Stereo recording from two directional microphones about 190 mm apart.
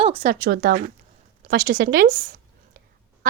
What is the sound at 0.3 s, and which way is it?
Speech, 55° right (ahead or behind).